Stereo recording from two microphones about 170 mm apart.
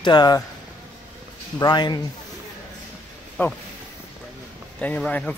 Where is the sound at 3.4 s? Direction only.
10° left (ahead or behind).